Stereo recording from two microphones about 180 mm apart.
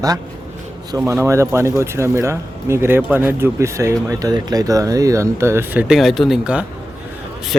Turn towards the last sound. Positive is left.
turn(degrees=-5)  # may be behind; listen again after turning